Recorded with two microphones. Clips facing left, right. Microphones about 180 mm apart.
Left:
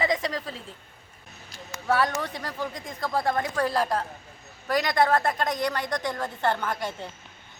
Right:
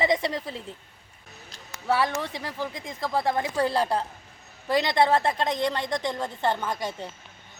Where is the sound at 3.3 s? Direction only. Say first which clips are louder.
Right 1 dB; 25° right (ahead or behind).